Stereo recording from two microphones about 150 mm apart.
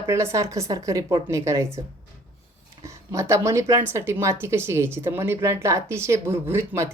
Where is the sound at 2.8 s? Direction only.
20° right (ahead or behind).